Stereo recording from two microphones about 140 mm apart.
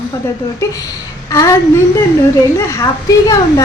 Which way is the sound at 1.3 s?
20° left (ahead or behind).